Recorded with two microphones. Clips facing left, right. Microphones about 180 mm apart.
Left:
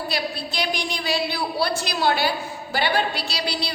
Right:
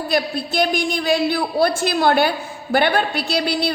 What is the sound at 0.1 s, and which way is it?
A woman's voice, 50° right (ahead or behind).